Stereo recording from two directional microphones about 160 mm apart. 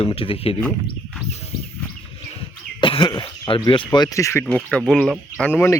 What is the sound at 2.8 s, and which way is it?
Cough, 30° left (ahead or behind).